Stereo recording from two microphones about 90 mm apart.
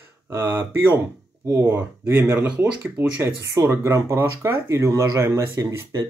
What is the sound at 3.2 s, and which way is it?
Speech, 30° right (ahead or behind).